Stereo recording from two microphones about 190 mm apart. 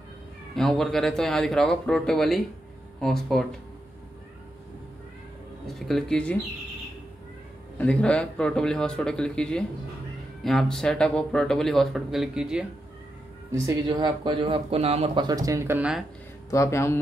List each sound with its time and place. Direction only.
0.6 s speech: centre (ahead or behind)
5.7 s speech: centre (ahead or behind)
7.7 s speech: 5° left (ahead or behind)
13.5 s speech: 20° right (ahead or behind)
15.2 s speech: 20° right (ahead or behind)
16.4 s speech: 15° left (ahead or behind)